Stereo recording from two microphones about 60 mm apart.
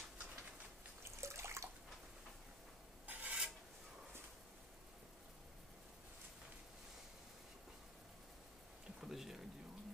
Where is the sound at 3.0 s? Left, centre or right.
Right.